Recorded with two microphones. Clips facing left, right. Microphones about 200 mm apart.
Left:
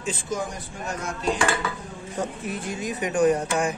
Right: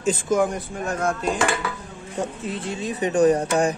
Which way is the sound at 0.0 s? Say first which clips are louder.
Right 8 dB; 50° right (ahead or behind).